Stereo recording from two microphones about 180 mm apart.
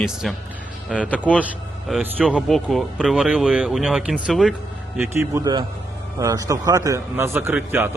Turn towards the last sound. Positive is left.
turn(degrees=-15)  # may be behind; listen again after turning